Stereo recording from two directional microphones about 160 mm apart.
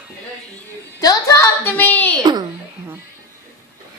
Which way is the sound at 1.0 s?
20° left (ahead or behind).